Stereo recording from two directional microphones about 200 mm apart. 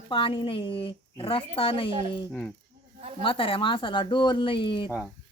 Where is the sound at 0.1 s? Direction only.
25° left (ahead or behind).